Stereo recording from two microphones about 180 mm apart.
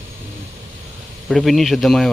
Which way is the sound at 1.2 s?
Centre (ahead or behind).